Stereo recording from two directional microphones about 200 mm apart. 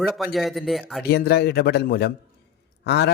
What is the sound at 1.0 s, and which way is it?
A man's voice, 55° left (ahead or behind).